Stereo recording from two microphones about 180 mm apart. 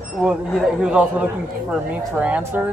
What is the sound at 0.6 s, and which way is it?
Speech, 5° right (ahead or behind).